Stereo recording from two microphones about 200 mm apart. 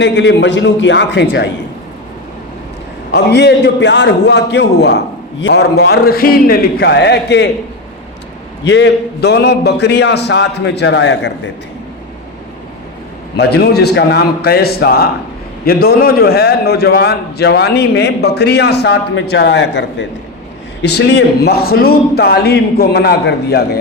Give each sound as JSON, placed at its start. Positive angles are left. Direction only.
{"t": 0.0, "sound": "a man's voice", "side_deg": 65}
{"t": 3.1, "sound": "a man's voice", "side_deg": 60}
{"t": 8.6, "sound": "a man's voice", "side_deg": 60}
{"t": 13.3, "sound": "a man's voice", "side_deg": 55}